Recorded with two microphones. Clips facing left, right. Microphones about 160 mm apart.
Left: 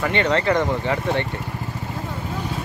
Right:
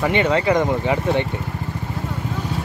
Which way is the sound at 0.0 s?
15° right (ahead or behind).